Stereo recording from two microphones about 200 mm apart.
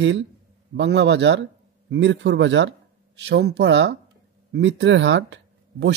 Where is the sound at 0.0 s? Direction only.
65° right (ahead or behind).